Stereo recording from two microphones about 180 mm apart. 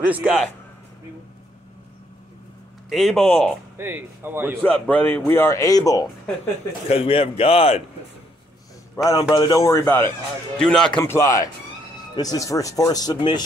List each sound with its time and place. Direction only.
0.0 s speech: 5° right (ahead or behind)
2.9 s speech: centre (ahead or behind)
3.7 s a man's voice: 10° right (ahead or behind)
4.6 s speech: 5° left (ahead or behind)
6.9 s a man's voice: 30° left (ahead or behind)
8.9 s a man's voice: 20° left (ahead or behind)
10.6 s speech: 5° left (ahead or behind)
11.0 s speech: 15° left (ahead or behind)